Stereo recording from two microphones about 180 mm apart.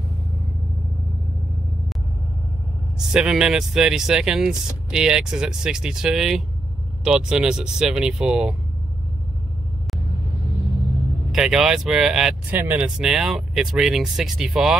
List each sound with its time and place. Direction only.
3.1 s speech: 5° right (ahead or behind)
11.3 s speech: 5° right (ahead or behind)